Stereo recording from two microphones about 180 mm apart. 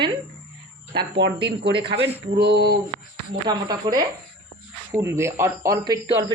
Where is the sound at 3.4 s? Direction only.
20° right (ahead or behind).